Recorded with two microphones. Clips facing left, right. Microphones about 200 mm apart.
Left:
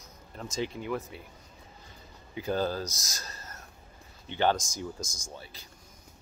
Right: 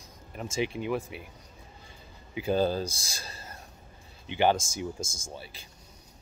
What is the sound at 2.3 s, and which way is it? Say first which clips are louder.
Speech: right 4 dB; 15° right (ahead or behind).